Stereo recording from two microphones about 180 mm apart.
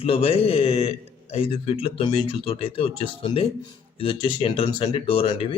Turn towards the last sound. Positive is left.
turn(degrees=30)  # may be behind; listen again after turning